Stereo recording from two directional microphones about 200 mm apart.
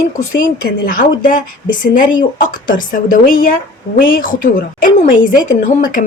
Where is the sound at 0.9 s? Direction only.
45° left (ahead or behind).